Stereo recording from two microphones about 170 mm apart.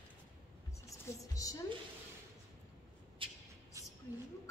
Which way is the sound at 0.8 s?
20° left (ahead or behind).